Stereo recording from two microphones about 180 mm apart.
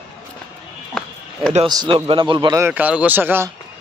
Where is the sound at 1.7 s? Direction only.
25° right (ahead or behind).